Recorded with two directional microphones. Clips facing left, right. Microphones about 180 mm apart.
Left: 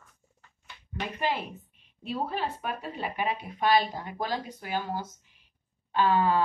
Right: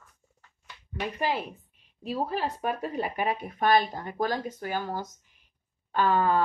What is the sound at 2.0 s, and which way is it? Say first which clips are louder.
Speech: right 2 dB; 40° right (ahead or behind).